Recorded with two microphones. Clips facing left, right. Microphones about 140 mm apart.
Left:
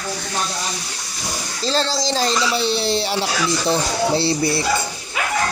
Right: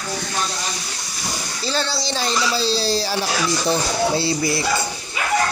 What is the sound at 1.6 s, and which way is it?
Speech, 35° left (ahead or behind).